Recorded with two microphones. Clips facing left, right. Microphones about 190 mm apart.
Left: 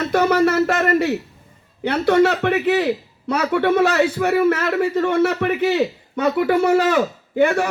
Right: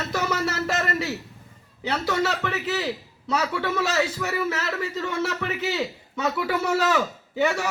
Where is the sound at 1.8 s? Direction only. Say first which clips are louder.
Left 10 dB; 60° left (ahead or behind).